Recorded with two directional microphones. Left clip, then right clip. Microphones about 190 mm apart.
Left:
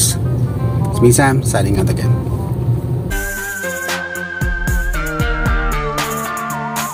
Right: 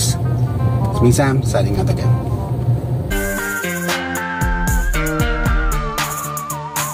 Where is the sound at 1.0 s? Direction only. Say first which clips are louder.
Left 4 dB; 25° left (ahead or behind).